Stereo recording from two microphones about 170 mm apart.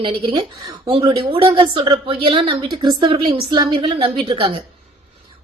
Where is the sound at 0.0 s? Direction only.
30° right (ahead or behind).